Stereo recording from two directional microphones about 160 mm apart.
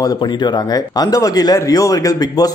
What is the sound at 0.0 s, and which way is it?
Speech, 25° left (ahead or behind).